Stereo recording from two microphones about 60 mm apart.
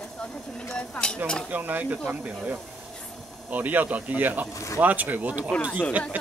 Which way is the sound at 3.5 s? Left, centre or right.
Right.